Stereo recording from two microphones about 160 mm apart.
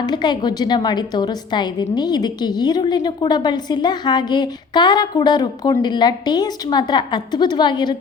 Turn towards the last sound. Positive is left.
turn(degrees=30)  # may be behind; listen again after turning